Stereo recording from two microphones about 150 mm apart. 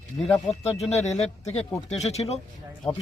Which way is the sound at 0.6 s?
45° left (ahead or behind).